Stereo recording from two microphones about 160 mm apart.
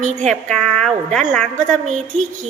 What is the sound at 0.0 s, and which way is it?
Speech, 50° right (ahead or behind).